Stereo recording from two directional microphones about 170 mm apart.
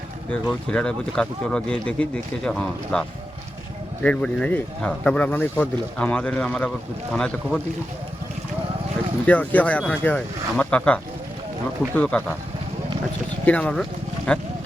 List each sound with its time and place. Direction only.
0.7 s speech: 5° left (ahead or behind)
4.0 s speech: 5° left (ahead or behind)
9.2 s speech: 10° left (ahead or behind)
13.4 s speech: 10° left (ahead or behind)